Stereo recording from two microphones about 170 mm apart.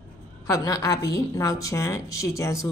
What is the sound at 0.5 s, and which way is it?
A woman's voice, 20° left (ahead or behind).